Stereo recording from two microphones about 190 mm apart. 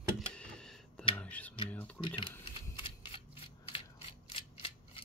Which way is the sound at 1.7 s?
10° left (ahead or behind).